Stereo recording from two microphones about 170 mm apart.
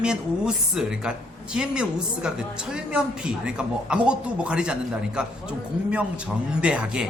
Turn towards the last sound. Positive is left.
turn(degrees=-5)  # may be behind; listen again after turning